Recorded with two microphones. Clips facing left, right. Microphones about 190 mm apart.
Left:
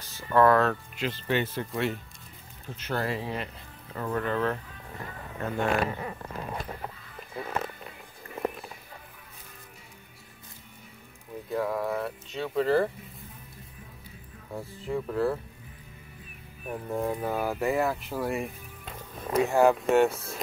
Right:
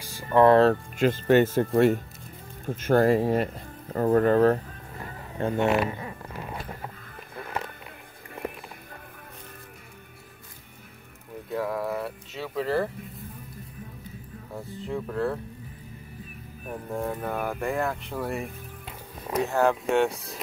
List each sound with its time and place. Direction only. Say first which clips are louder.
0.3 s speech: right 4 dB; 25° right (ahead or behind)
0.9 s speech: right 9 dB; 50° right (ahead or behind)
5.4 s speech: right 4 dB; 25° right (ahead or behind)
11.4 s speech: even; centre (ahead or behind)
14.5 s speech: left 1 dB; centre (ahead or behind)
16.6 s speech: left 1 dB; centre (ahead or behind)